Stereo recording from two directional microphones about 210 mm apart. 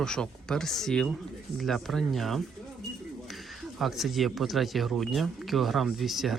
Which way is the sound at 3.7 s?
Centre (ahead or behind).